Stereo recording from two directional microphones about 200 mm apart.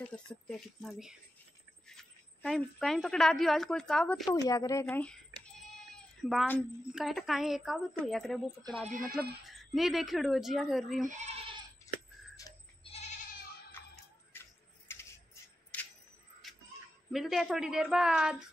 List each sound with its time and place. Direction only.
0.0 s a woman's voice: 5° left (ahead or behind)
4.4 s a woman's voice: 15° left (ahead or behind)
4.8 s a woman's voice: 5° left (ahead or behind)
6.2 s a woman's voice: 5° left (ahead or behind)
11.1 s speech: 35° right (ahead or behind)
11.9 s a sound: 15° left (ahead or behind)
12.4 s goat: 20° left (ahead or behind)
14.3 s a sound: 10° left (ahead or behind)
17.1 s a woman's voice: centre (ahead or behind)